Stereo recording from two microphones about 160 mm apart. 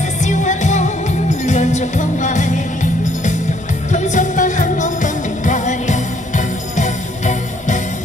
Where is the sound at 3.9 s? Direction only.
50° left (ahead or behind).